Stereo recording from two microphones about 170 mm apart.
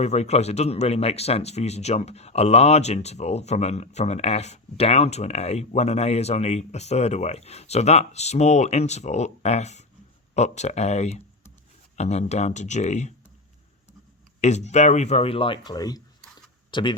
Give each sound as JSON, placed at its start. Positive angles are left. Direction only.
{"t": 0.0, "sound": "speech", "side_deg": 40}
{"t": 14.4, "sound": "speech", "side_deg": 40}